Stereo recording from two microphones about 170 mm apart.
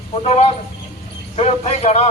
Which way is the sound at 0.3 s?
35° left (ahead or behind).